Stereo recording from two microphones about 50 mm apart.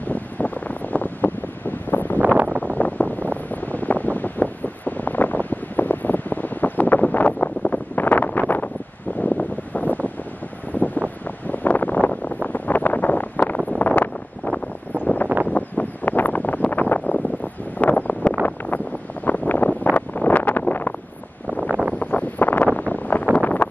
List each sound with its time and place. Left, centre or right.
0.1 s wind noise: left
2.1 s wind noise: right
2.6 s wind noise: left
8.3 s wind: left
9.2 s wind noise: left
11.2 s wind noise: left
15.5 s wind: left
17.7 s vehicle: left
19.2 s wind noise: left
21.6 s wind noise: right
21.9 s wind noise: left
23.3 s a sound: left